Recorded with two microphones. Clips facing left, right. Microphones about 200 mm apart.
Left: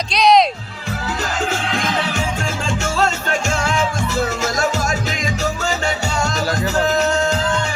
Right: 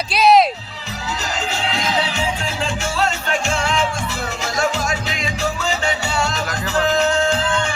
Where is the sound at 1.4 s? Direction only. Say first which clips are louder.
Left 2 dB; 50° left (ahead or behind).